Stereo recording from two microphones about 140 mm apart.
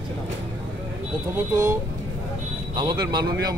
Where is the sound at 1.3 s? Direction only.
25° right (ahead or behind).